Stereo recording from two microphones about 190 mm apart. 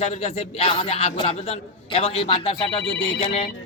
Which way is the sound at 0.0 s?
35° left (ahead or behind).